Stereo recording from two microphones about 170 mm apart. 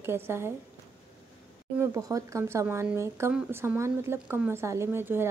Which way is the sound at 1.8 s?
20° right (ahead or behind).